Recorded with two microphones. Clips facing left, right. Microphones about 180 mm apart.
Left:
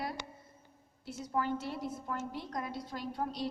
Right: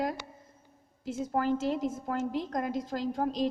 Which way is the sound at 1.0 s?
90° right.